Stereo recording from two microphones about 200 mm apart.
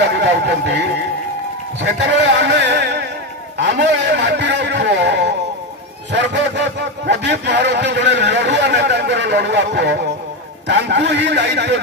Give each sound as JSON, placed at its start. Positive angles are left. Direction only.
{"t": 0.0, "sound": "a man's voice", "side_deg": -60}